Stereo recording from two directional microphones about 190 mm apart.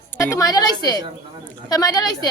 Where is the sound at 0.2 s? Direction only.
15° left (ahead or behind).